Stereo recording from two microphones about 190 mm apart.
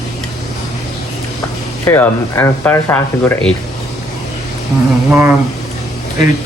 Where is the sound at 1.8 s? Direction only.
10° left (ahead or behind).